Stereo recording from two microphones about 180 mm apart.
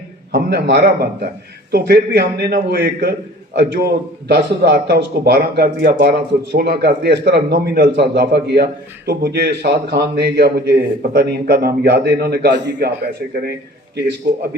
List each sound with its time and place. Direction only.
0.3 s a man's voice: 65° right (ahead or behind)